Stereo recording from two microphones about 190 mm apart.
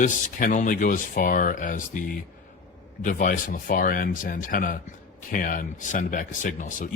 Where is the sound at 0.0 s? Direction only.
40° left (ahead or behind).